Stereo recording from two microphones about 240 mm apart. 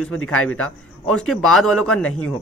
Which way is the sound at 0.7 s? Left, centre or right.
Centre.